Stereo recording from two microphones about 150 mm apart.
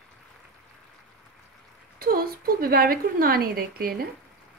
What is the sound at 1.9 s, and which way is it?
Speech, 80° right.